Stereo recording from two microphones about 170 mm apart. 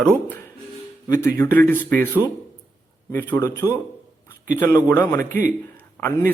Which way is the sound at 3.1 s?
10° left (ahead or behind).